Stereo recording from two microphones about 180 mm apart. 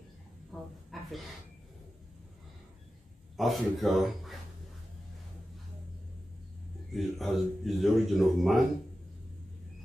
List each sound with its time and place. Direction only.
0.5 s a sound: 5° right (ahead or behind)
3.3 s speech: centre (ahead or behind)
6.9 s speech: centre (ahead or behind)